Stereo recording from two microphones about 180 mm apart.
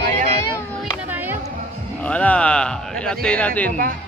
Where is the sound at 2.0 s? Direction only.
5° left (ahead or behind).